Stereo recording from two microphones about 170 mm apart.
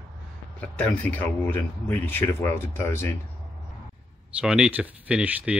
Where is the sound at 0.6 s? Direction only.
10° left (ahead or behind).